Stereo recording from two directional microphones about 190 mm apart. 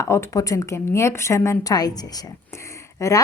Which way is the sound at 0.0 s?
15° left (ahead or behind).